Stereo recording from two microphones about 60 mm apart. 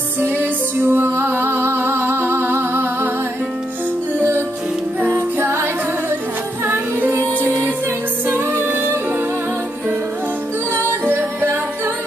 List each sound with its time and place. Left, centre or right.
0.2 s music: right
5.1 s music: right
11.1 s music: right